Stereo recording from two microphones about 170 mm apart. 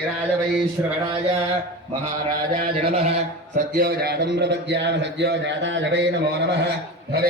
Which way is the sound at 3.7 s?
65° right (ahead or behind).